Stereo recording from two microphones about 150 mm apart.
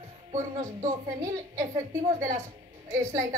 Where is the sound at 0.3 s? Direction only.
55° right (ahead or behind).